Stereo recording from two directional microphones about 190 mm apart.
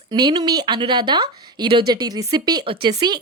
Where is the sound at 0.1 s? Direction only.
20° right (ahead or behind).